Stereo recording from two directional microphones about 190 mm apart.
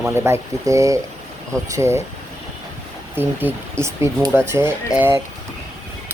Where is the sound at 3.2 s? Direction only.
10° right (ahead or behind).